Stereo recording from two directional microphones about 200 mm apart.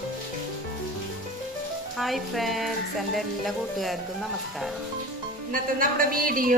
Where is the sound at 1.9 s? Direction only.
Centre (ahead or behind).